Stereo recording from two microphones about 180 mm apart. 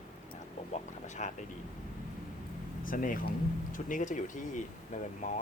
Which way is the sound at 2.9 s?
50° left (ahead or behind).